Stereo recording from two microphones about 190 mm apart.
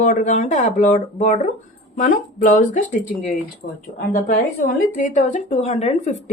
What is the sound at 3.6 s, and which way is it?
Speech, 60° left (ahead or behind).